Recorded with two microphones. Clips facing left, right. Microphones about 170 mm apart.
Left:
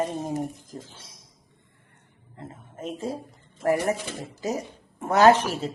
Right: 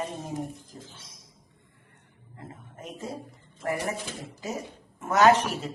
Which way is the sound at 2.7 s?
30° left (ahead or behind).